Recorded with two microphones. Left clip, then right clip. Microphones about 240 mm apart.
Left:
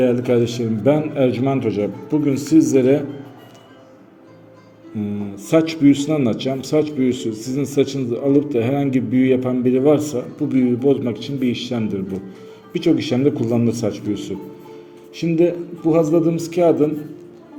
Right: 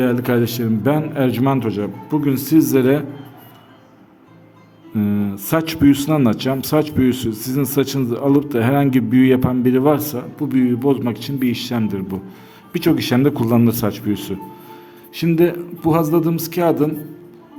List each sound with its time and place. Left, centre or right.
0.0 s speech: right
4.9 s speech: right